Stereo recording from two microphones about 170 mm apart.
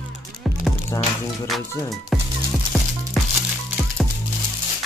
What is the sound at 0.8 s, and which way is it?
Music, 15° left (ahead or behind).